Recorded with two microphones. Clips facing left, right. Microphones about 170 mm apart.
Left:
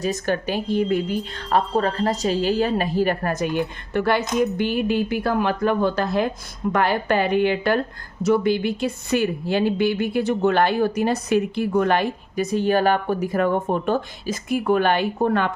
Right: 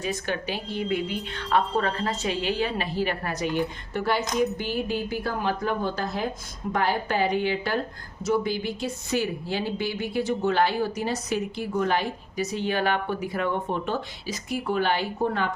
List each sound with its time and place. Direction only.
0.0 s speech: 45° left (ahead or behind); by 15.4 s 65° left (ahead or behind)